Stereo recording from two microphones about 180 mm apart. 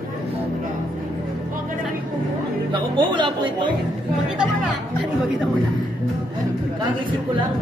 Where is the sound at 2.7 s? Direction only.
25° right (ahead or behind).